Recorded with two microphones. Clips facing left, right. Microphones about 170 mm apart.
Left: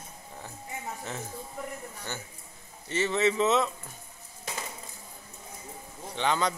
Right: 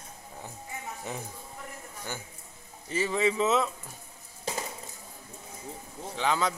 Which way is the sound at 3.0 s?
10° right (ahead or behind).